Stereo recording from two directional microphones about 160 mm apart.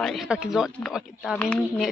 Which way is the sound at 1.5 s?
5° left (ahead or behind).